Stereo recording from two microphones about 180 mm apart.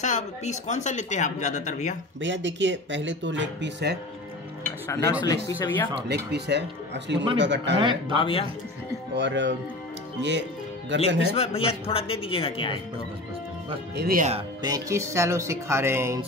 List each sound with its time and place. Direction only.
0.0 s speech: 40° left (ahead or behind)
2.2 s speech: 90° right; by 4.0 s 75° right (ahead or behind)
5.2 s speech: 15° left (ahead or behind)
6.0 s speech: 65° right (ahead or behind)
7.7 s speech: 30° right (ahead or behind)
8.2 s speech: 30° left (ahead or behind)
9.1 s speech: 80° right
10.9 s speech: 85° right
11.3 s speech: 35° left (ahead or behind)
13.9 s speech: 55° right (ahead or behind)
14.6 s speech: 20° right (ahead or behind)